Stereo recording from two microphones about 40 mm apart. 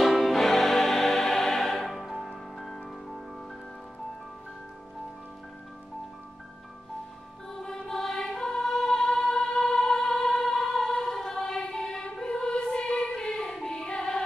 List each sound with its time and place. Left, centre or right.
0.0 s music: centre
7.4 s music: centre
12.7 s choir: left
13.5 s music: centre